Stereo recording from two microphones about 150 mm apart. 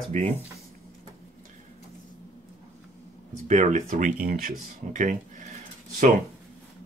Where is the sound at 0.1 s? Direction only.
50° right (ahead or behind).